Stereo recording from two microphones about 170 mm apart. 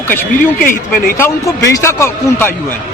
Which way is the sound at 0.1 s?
10° left (ahead or behind).